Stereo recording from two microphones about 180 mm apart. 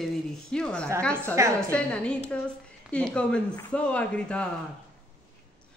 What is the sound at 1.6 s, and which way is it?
Speech, 5° left (ahead or behind).